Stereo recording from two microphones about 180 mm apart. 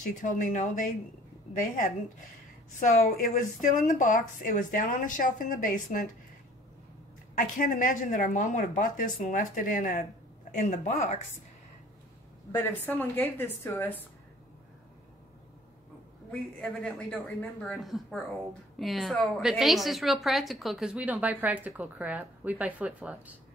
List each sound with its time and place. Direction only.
0.1 s a woman's voice: 45° left (ahead or behind)
2.8 s a woman's voice: 45° left (ahead or behind)
7.3 s a woman's voice: 50° left (ahead or behind)
12.5 s a woman's voice: 10° left (ahead or behind)
16.3 s a woman's voice: 5° left (ahead or behind)